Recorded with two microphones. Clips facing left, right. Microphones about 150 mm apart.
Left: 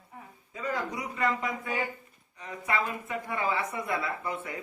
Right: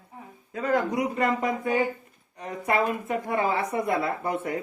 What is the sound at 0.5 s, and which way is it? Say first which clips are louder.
Speech: right 8 dB; 60° right (ahead or behind).